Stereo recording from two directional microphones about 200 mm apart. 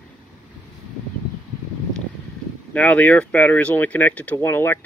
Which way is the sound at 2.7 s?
5° left (ahead or behind).